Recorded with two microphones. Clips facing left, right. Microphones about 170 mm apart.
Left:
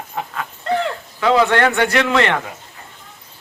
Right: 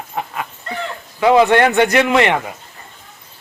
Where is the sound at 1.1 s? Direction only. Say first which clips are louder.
Right 4 dB; 15° right (ahead or behind).